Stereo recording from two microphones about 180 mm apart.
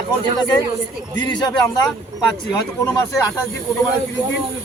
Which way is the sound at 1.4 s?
20° left (ahead or behind).